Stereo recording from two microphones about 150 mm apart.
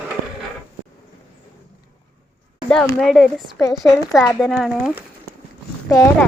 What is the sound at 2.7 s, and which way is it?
Speech, 5° left (ahead or behind).